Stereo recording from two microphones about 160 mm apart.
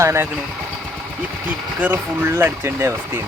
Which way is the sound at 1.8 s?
10° right (ahead or behind).